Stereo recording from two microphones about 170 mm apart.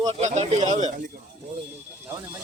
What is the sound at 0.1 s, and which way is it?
Speech, 40° right (ahead or behind).